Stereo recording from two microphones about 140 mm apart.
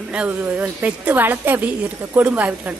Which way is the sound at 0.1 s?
10° right (ahead or behind).